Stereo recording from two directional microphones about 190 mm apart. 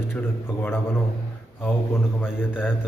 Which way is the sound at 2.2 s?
10° left (ahead or behind).